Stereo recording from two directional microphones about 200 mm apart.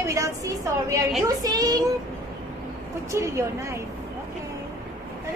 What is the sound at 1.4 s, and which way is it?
Speech, 20° right (ahead or behind).